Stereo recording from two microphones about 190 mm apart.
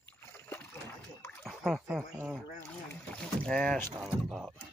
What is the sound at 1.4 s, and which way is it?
Speech, centre (ahead or behind).